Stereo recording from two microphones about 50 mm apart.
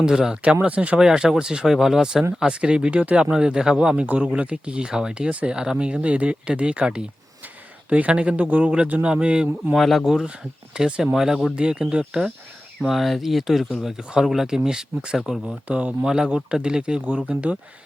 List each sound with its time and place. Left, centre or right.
0.0 s speech: centre
0.5 s speech: right
0.9 s speech: centre
2.5 s speech: centre
4.0 s speech: right
4.3 s speech: right
5.3 s speech: right
5.5 s speech: centre
5.8 s speech: right
9.7 s speech: centre
10.8 s speech: centre
12.9 s speech: centre; by 16.0 s right
16.0 s speech: centre